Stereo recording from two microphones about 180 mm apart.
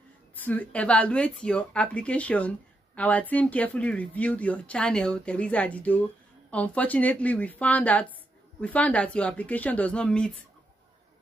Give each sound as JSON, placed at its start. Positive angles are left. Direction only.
{"t": 0.4, "sound": "speech", "side_deg": 10}